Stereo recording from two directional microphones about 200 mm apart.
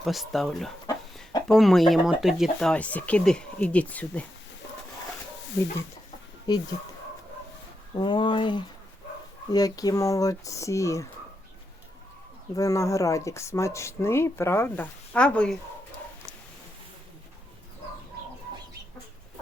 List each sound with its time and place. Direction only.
0.0 s speech: centre (ahead or behind)
0.9 s chicken: 20° left (ahead or behind)
1.5 s speech: centre (ahead or behind)
6.5 s speech: 20° left (ahead or behind)
7.9 s speech: 25° left (ahead or behind)
12.5 s speech: 15° left (ahead or behind)